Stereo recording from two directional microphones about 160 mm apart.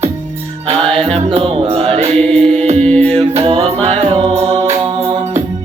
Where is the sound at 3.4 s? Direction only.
35° right (ahead or behind).